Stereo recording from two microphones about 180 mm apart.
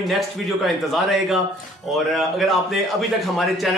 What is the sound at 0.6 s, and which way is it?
A man's voice, centre (ahead or behind).